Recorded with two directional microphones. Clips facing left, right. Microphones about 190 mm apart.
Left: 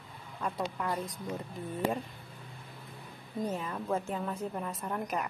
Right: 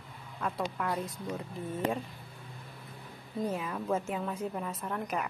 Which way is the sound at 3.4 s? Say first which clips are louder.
Right 1 dB; centre (ahead or behind).